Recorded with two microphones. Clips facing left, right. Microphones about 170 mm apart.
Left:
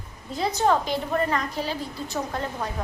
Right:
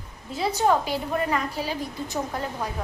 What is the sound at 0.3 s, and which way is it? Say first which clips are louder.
A woman's voice: even; 10° right (ahead or behind).